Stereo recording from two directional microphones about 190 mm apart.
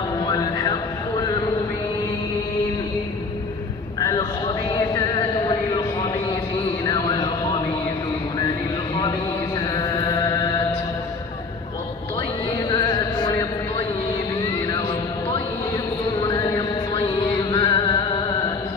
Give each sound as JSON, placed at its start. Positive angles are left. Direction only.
{"t": 0.3, "sound": "music", "side_deg": 20}
{"t": 6.8, "sound": "a sound", "side_deg": 20}
{"t": 9.8, "sound": "mantra", "side_deg": 20}
{"t": 12.6, "sound": "music", "side_deg": 20}
{"t": 16.3, "sound": "mantra", "side_deg": 20}
{"t": 17.5, "sound": "music", "side_deg": 20}